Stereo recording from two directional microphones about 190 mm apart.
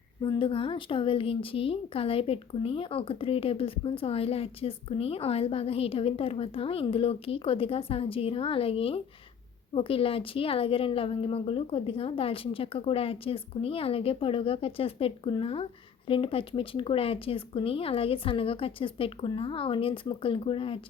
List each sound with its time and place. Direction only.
0.2 s a woman's voice: 25° left (ahead or behind)